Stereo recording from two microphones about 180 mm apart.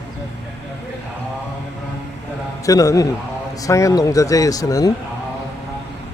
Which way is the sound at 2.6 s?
20° left (ahead or behind).